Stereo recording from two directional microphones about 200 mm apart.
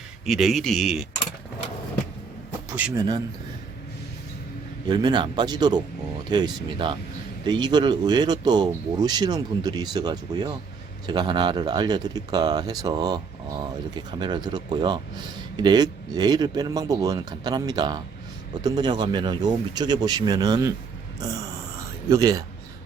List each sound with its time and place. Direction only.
0.3 s speech: centre (ahead or behind)
2.7 s speech: 10° right (ahead or behind)
4.9 s speech: 20° right (ahead or behind)